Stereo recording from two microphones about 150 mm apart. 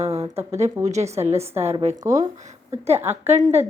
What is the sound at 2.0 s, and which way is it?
Speech, 20° right (ahead or behind).